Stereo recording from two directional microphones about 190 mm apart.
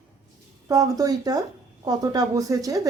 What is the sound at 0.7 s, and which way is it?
A woman's voice, 20° right (ahead or behind).